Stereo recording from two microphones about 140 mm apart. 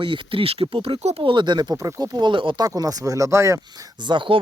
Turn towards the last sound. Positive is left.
turn(degrees=-35)  # may be behind; listen again after turning